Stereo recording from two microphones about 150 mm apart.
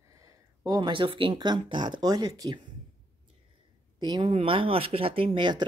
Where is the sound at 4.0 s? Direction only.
30° right (ahead or behind).